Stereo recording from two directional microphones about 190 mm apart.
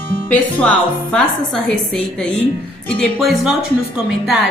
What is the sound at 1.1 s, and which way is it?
A woman's voice, centre (ahead or behind).